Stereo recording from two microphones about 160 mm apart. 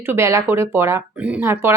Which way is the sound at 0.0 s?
15° right (ahead or behind).